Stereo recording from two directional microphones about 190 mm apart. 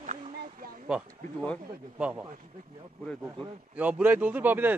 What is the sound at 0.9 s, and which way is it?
Speech, 5° right (ahead or behind).